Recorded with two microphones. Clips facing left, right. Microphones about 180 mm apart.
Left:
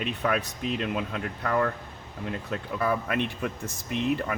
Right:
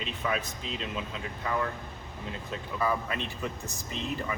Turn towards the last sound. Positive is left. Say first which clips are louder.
# left 6 dB
turn(degrees=60)  # may be behind; listen again after turning